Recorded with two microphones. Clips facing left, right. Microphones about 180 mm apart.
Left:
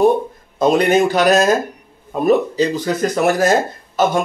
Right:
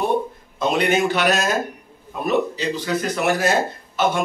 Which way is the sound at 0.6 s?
40° left (ahead or behind).